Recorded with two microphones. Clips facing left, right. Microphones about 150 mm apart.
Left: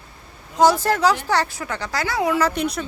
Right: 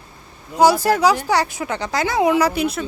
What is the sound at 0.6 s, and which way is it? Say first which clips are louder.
Speech: right 2 dB; 10° right (ahead or behind).